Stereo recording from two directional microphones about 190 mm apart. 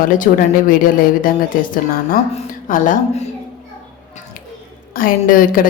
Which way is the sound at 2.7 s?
45° left (ahead or behind).